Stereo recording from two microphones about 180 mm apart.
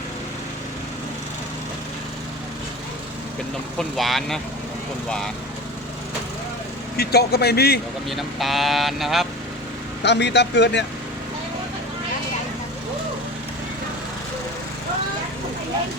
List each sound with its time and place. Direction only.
3.8 s speech: centre (ahead or behind)
6.9 s speech: 60° left (ahead or behind)
8.1 s speech: centre (ahead or behind)
10.0 s speech: 70° left (ahead or behind)